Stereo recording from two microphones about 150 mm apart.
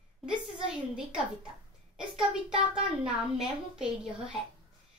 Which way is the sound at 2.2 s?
5° right (ahead or behind).